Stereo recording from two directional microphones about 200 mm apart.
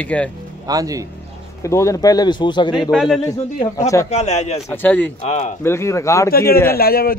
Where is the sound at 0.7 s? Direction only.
15° right (ahead or behind).